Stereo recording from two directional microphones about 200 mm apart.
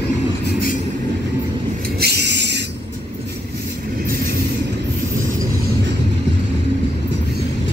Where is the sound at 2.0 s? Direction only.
55° right (ahead or behind).